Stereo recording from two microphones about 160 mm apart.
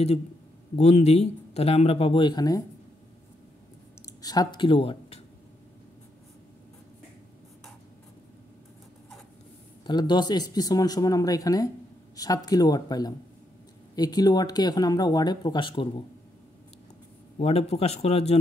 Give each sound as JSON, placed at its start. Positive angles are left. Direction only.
{"t": 0.7, "sound": "speech", "side_deg": 40}
{"t": 4.2, "sound": "speech", "side_deg": 25}
{"t": 9.8, "sound": "speech", "side_deg": 25}
{"t": 17.4, "sound": "speech", "side_deg": 40}